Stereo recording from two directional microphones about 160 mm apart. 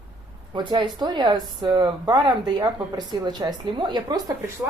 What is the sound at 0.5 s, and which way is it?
Speech, 30° right (ahead or behind).